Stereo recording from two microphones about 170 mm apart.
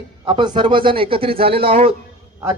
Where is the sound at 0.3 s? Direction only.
30° right (ahead or behind).